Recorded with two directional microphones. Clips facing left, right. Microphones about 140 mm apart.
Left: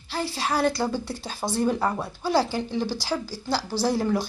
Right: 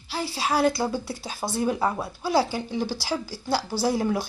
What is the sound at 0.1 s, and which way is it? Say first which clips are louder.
A woman's voice: right 1 dB; 10° right (ahead or behind).